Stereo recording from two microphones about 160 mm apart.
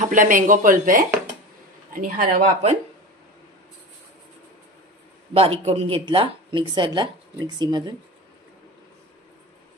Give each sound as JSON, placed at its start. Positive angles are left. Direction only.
{"t": 0.0, "sound": "a woman's voice", "side_deg": -55}
{"t": 5.3, "sound": "speech", "side_deg": -40}